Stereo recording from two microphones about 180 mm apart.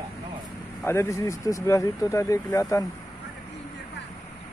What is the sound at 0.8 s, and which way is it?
Speech, 15° left (ahead or behind).